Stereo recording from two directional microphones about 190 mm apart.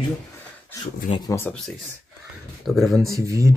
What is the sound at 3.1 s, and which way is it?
Speech, 15° right (ahead or behind).